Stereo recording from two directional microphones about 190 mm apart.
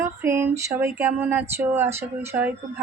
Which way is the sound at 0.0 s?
15° right (ahead or behind).